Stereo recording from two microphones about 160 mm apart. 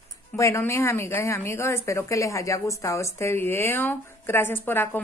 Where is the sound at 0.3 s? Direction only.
15° left (ahead or behind).